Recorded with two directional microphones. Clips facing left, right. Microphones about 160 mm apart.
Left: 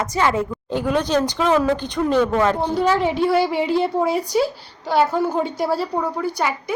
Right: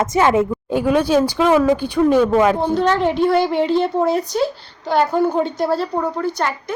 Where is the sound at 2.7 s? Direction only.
5° left (ahead or behind).